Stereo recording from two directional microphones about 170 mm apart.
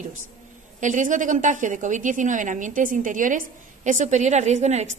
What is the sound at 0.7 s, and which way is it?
A woman's voice, 45° right (ahead or behind).